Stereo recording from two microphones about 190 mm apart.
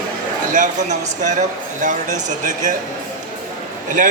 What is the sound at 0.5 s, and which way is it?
Speech, 40° right (ahead or behind).